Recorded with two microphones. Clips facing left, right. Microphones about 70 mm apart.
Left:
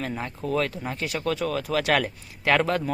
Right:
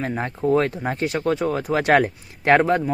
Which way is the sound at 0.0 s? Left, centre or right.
Right.